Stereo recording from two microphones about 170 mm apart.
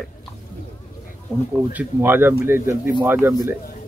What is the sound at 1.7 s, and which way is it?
A man's voice, 10° right (ahead or behind).